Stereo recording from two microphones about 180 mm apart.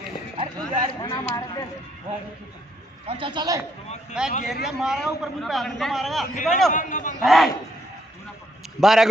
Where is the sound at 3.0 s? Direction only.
30° right (ahead or behind).